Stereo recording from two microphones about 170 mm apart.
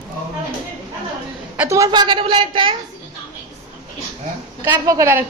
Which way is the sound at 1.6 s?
20° right (ahead or behind).